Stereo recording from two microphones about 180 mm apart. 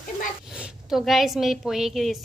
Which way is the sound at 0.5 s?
Centre (ahead or behind).